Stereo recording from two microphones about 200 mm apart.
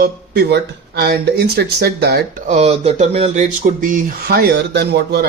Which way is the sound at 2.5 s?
30° right (ahead or behind).